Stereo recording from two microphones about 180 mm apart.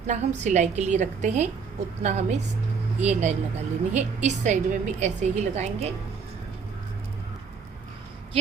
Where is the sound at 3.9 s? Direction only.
40° right (ahead or behind).